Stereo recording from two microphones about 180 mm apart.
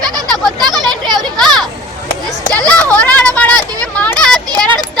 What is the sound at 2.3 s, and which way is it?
Children playing, 5° left (ahead or behind).